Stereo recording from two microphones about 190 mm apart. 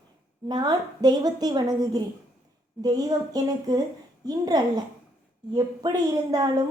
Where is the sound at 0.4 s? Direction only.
20° right (ahead or behind).